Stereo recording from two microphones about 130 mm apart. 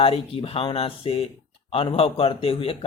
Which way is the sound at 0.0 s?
45° left (ahead or behind).